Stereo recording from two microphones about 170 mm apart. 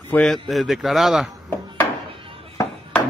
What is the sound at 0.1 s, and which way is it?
A man's voice, 5° left (ahead or behind).